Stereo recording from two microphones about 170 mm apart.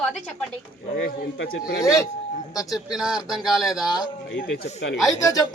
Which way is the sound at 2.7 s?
5° right (ahead or behind).